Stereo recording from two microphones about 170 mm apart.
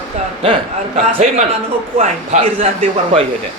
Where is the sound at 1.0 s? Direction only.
45° right (ahead or behind).